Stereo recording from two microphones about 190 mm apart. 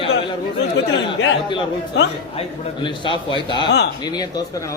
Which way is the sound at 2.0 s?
70° left (ahead or behind).